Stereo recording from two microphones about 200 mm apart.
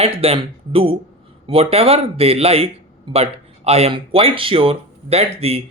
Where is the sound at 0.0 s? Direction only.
30° right (ahead or behind).